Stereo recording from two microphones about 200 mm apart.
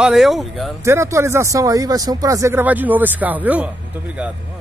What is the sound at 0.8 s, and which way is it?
Speech, 15° right (ahead or behind).